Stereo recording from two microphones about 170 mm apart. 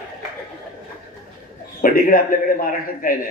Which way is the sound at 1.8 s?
60° left (ahead or behind).